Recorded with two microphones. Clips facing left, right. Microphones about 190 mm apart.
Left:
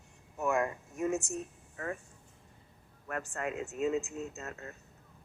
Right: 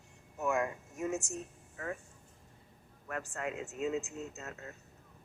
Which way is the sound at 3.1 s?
55° left (ahead or behind).